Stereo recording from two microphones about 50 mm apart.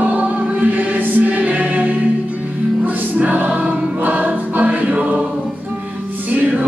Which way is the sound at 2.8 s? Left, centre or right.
Right.